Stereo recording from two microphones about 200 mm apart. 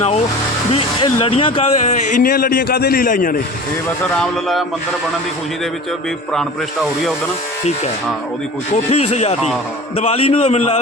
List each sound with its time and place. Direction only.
0.7 s speech: 25° left (ahead or behind)
2.0 s a man's voice: 45° left (ahead or behind)
3.8 s speech: centre (ahead or behind)
8.7 s a man's voice: 30° left (ahead or behind)